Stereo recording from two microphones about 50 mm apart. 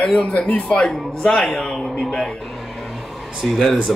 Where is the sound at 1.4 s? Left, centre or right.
Centre.